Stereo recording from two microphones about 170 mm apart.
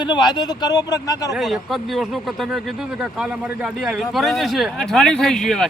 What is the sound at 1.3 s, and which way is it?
Speech, centre (ahead or behind).